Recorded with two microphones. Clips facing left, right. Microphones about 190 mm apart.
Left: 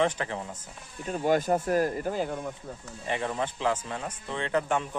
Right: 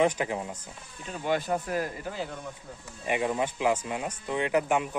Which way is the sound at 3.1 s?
15° right (ahead or behind).